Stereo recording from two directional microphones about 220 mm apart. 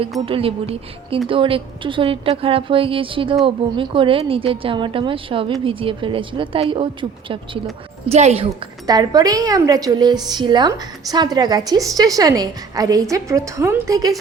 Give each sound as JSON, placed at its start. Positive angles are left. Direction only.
{"t": 0.3, "sound": "speech", "side_deg": -25}
{"t": 8.9, "sound": "a woman's voice", "side_deg": -15}